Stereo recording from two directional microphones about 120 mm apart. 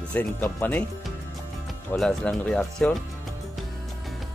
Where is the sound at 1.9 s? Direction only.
5° left (ahead or behind).